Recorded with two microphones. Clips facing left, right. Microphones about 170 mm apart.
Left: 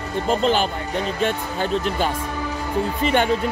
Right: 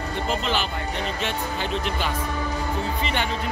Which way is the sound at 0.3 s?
45° left (ahead or behind).